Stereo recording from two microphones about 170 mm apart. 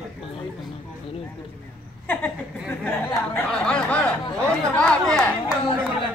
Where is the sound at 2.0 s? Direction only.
10° left (ahead or behind).